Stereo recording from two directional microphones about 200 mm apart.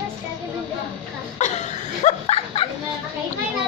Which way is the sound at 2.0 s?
30° left (ahead or behind).